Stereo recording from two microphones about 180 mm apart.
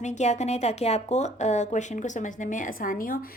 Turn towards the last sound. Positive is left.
turn(degrees=50)  # may be behind; listen again after turning